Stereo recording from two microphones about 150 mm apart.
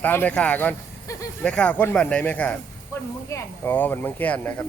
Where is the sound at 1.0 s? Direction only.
20° left (ahead or behind).